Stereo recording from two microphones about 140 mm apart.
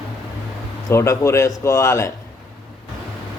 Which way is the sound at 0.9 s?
20° left (ahead or behind).